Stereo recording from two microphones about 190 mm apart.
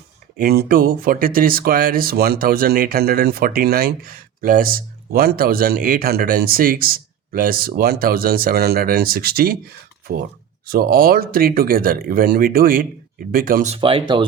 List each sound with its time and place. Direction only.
0.3 s speech: 50° right (ahead or behind)
10.7 s speech: 50° right (ahead or behind)
13.7 s speech: 30° right (ahead or behind)